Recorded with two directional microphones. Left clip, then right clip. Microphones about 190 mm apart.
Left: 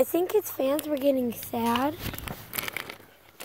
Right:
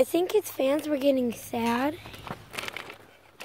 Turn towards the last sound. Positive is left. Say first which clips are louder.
# left 2 dB
turn(degrees=40)  # may be behind; listen again after turning